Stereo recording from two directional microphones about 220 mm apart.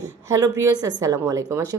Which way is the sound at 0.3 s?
15° right (ahead or behind).